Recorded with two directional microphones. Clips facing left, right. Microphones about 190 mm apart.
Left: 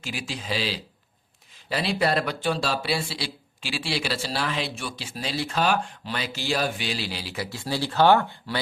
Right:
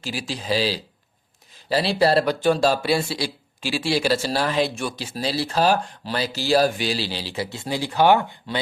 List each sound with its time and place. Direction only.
0.0 s speech: 35° right (ahead or behind); by 8.5 s 15° right (ahead or behind)